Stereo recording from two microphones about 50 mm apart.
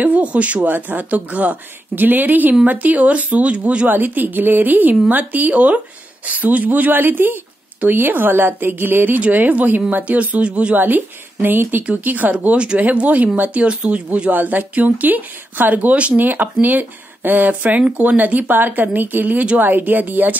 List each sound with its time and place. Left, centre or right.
0.0 s speech: right
0.6 s speech: right
3.9 s speech: right
10.8 s speech: right